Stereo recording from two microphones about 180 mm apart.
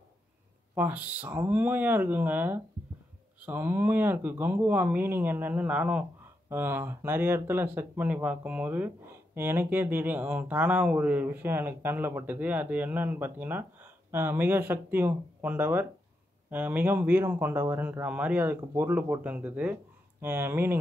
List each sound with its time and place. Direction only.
0.7 s speech: 10° right (ahead or behind)